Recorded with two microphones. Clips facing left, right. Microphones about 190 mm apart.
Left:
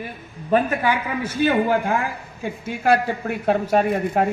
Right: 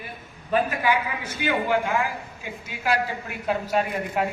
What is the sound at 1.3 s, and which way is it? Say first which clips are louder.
A woman's voice: left 5 dB; 50° left (ahead or behind).